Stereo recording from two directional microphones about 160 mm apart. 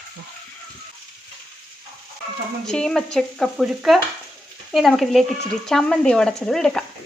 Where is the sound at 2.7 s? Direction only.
5° left (ahead or behind).